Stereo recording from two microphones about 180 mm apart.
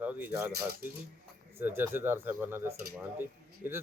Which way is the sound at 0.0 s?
10° right (ahead or behind).